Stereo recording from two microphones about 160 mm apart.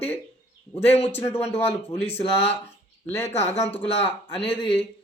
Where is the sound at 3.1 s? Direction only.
15° left (ahead or behind).